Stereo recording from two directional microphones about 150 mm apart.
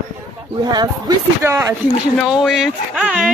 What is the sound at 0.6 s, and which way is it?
Speech, 30° right (ahead or behind).